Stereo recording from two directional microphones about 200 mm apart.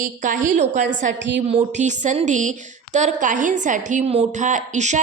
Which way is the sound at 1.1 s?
65° right (ahead or behind).